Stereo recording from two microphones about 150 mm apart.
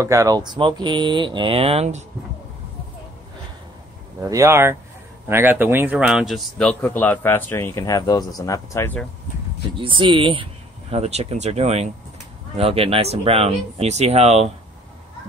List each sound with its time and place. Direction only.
0.0 s speech: 20° right (ahead or behind); by 2.0 s 45° right (ahead or behind)
4.2 s speech: 20° right (ahead or behind); by 9.0 s 15° left (ahead or behind)
9.8 s speech: 35° right (ahead or behind)